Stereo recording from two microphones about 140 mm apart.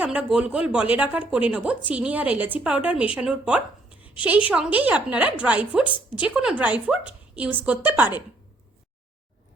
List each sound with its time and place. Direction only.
0.0 s a woman's voice: 10° right (ahead or behind)
3.8 s a sound: 40° left (ahead or behind)
4.4 s a woman's voice: 10° right (ahead or behind)